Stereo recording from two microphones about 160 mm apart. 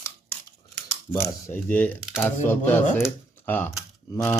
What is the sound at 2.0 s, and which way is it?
Speech, 5° right (ahead or behind).